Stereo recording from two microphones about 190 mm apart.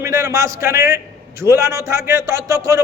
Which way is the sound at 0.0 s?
15° right (ahead or behind).